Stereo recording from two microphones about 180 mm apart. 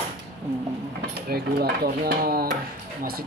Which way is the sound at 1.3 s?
60° right (ahead or behind).